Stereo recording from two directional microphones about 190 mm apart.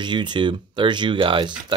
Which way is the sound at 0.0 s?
25° right (ahead or behind).